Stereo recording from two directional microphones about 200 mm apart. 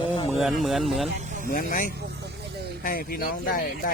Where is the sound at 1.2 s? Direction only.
40° right (ahead or behind).